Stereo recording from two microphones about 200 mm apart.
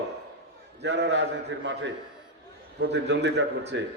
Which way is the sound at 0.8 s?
60° right (ahead or behind).